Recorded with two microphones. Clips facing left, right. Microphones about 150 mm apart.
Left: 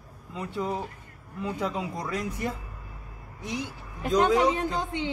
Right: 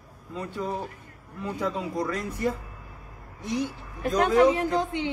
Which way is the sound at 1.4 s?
20° left (ahead or behind).